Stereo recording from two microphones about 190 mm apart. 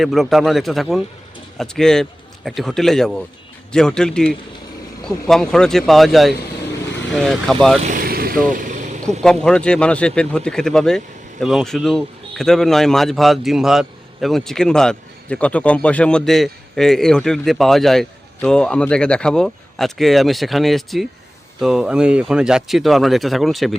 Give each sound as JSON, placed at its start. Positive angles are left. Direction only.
{"t": 0.0, "sound": "a man's voice", "side_deg": 0}
{"t": 7.9, "sound": "vehicle", "side_deg": -50}
{"t": 9.2, "sound": "speech", "side_deg": 5}